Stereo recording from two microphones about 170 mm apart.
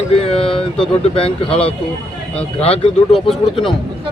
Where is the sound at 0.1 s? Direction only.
35° left (ahead or behind).